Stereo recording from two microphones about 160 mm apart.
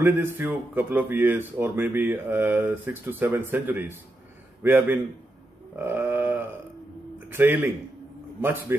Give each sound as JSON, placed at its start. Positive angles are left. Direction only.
{"t": 0.0, "sound": "speech", "side_deg": -15}
{"t": 5.8, "sound": "a sound", "side_deg": -10}
{"t": 7.2, "sound": "a man's voice", "side_deg": -10}